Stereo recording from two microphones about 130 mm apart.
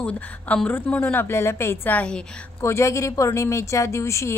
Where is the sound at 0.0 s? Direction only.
10° left (ahead or behind).